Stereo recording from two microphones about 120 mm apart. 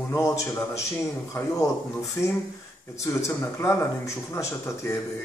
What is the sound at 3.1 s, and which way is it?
A man's voice, 25° left (ahead or behind).